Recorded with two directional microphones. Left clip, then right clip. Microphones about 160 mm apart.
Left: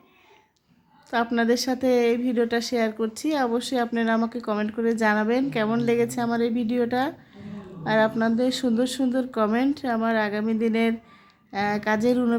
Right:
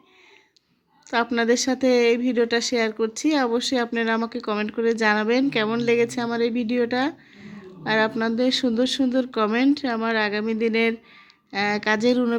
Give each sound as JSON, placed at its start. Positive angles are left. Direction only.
{"t": 1.1, "sound": "a woman's voice", "side_deg": -15}